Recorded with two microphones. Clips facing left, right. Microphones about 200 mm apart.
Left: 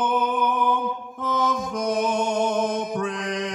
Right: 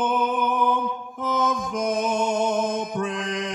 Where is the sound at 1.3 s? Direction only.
25° right (ahead or behind).